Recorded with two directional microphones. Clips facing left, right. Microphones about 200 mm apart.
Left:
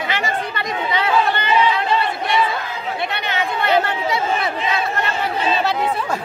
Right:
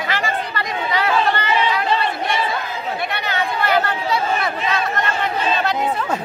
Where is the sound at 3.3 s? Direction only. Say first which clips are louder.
Left 1 dB; 20° left (ahead or behind).